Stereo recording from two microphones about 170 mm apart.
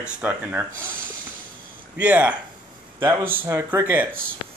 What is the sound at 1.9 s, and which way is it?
Speech, 10° right (ahead or behind).